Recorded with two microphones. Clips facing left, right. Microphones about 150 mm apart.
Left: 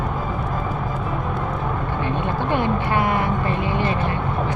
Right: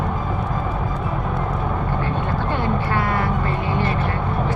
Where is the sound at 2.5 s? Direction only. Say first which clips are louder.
Left 2 dB; 20° left (ahead or behind).